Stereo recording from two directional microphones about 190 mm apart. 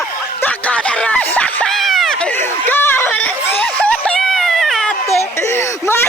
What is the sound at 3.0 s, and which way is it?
Baby cry, 5° left (ahead or behind).